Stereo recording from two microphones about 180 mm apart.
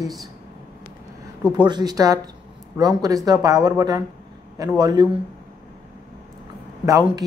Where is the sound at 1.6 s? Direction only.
25° right (ahead or behind).